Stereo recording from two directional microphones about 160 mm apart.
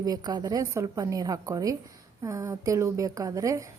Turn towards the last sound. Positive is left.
turn(degrees=-20)  # may be behind; listen again after turning